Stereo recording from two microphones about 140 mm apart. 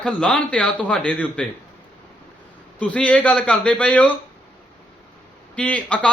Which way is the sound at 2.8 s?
10° left (ahead or behind).